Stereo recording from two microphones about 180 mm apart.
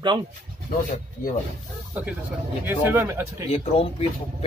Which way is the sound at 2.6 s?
10° right (ahead or behind).